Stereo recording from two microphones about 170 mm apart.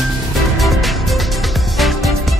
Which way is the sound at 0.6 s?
Centre (ahead or behind).